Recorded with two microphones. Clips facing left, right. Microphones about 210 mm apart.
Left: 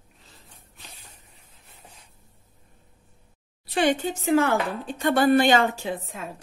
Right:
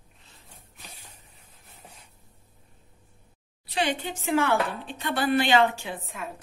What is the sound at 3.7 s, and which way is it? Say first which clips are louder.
A woman's voice: left 6 dB; 50° left (ahead or behind).